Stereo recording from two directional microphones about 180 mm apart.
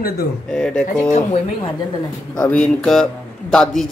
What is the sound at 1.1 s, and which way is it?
Speech, 35° left (ahead or behind).